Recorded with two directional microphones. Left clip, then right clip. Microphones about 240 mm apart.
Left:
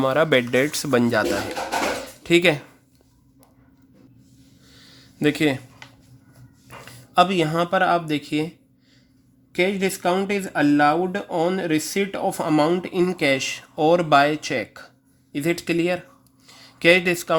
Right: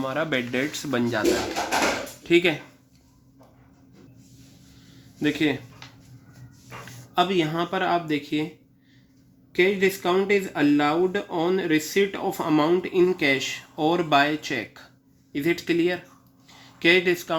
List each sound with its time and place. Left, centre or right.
0.0 s speech: left
2.2 s speech: left
4.9 s a sound: left
7.1 s speech: left
9.5 s speech: left
16.5 s a sound: left